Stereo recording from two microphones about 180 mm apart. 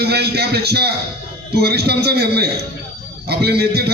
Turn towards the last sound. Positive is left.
turn(degrees=-65)  # may be behind; listen again after turning